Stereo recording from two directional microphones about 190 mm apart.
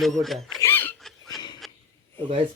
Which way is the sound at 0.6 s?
10° left (ahead or behind).